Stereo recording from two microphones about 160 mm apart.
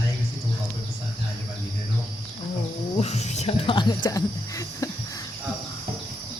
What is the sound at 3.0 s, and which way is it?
Speech, 45° left (ahead or behind).